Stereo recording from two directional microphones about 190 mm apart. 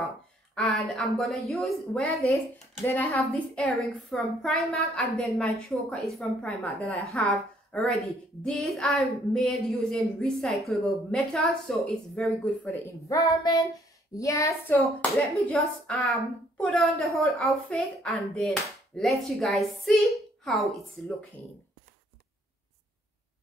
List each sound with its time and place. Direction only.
0.6 s a woman's voice: centre (ahead or behind)
2.8 s a woman's voice: 10° left (ahead or behind)
13.1 s a woman's voice: 20° left (ahead or behind)